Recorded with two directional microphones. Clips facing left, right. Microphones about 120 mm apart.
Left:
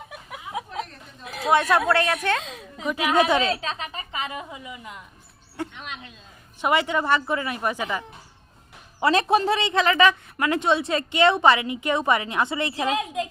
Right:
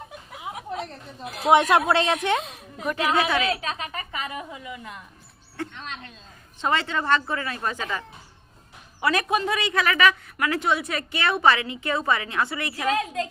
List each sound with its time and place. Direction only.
1.5 s a woman's voice: 20° right (ahead or behind)
2.9 s a woman's voice: 15° left (ahead or behind)
3.4 s a woman's voice: 30° left (ahead or behind)
9.0 s a woman's voice: 25° left (ahead or behind)